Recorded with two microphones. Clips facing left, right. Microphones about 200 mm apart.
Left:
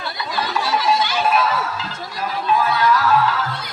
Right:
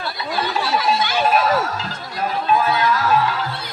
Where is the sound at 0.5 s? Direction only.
35° right (ahead or behind).